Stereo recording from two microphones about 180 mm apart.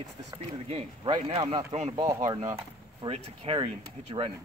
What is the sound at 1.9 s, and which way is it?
Speech, 20° right (ahead or behind).